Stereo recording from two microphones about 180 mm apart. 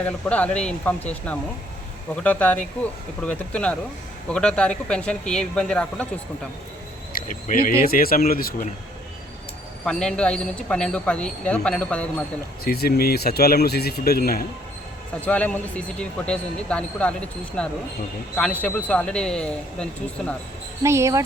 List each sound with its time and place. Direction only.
0.0 s a man's voice: 5° left (ahead or behind)
7.1 s cricket: 45° left (ahead or behind)
7.9 s speech: 55° left (ahead or behind)
9.8 s a man's voice: 5° left (ahead or behind)
12.6 s speech: 60° left (ahead or behind)
15.2 s a man's voice: 10° left (ahead or behind)
20.8 s speech: 15° right (ahead or behind)